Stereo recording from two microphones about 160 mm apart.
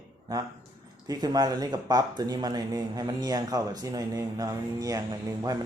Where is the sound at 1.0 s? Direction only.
25° right (ahead or behind).